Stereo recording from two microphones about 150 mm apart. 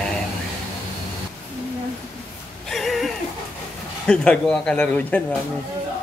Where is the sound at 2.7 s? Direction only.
Centre (ahead or behind).